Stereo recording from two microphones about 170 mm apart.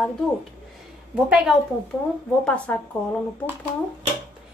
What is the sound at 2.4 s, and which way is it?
Speech, 5° left (ahead or behind).